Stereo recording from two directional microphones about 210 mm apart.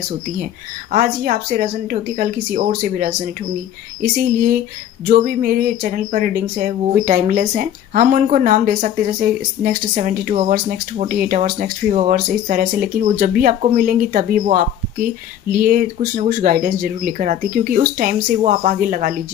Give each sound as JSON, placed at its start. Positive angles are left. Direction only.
{"t": 0.9, "sound": "speech", "side_deg": -40}